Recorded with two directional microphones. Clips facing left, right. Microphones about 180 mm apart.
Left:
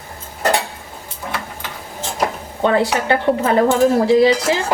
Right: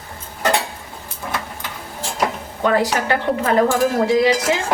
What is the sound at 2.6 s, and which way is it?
Speech, 25° left (ahead or behind).